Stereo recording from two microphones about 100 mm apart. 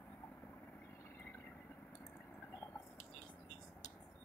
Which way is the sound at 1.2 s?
15° left (ahead or behind).